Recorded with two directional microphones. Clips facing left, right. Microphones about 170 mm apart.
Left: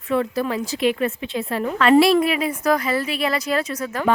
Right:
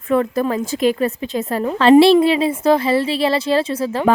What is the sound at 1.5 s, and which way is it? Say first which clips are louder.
A woman's voice: right 5 dB; 30° right (ahead or behind).